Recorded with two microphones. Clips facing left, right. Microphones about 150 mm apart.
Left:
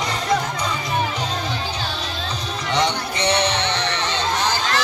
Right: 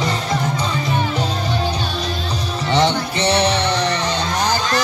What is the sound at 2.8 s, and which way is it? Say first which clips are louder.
Music: right 4 dB; 30° right (ahead or behind).